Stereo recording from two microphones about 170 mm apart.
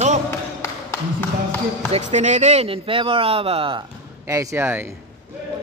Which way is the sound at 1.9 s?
45° right (ahead or behind).